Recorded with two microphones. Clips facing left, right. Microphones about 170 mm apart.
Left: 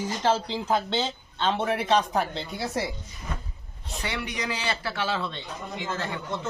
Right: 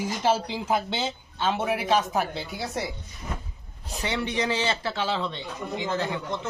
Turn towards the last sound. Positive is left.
turn(degrees=-15)  # may be behind; listen again after turning